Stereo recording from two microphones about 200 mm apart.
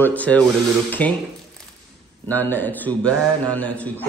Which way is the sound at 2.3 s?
10° left (ahead or behind).